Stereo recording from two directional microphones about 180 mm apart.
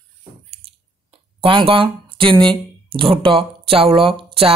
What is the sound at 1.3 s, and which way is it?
Speech, 30° right (ahead or behind).